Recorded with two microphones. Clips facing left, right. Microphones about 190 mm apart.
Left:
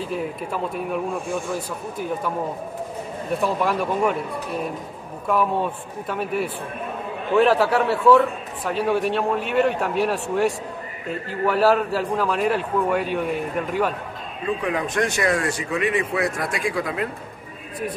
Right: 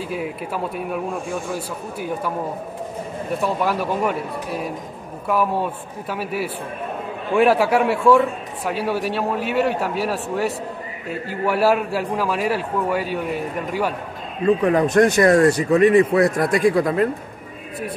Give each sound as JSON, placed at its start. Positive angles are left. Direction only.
{"t": 0.1, "sound": "a man's voice", "side_deg": -5}
{"t": 3.4, "sound": "a man's voice", "side_deg": -5}
{"t": 14.4, "sound": "speech", "side_deg": -45}